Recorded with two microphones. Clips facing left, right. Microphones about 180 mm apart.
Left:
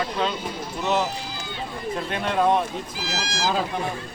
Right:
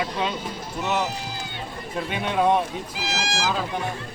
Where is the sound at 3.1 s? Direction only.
70° right (ahead or behind).